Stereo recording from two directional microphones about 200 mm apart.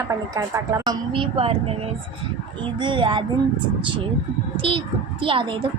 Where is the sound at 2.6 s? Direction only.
25° right (ahead or behind).